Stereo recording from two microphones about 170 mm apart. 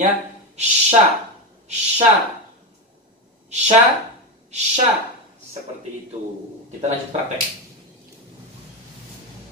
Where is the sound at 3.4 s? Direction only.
40° right (ahead or behind).